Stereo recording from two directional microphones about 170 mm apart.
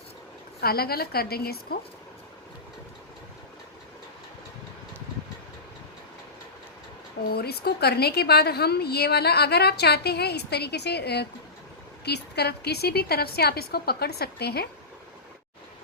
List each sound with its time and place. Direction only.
0.6 s a woman's voice: 65° left (ahead or behind)
7.3 s a woman's voice: 70° left (ahead or behind)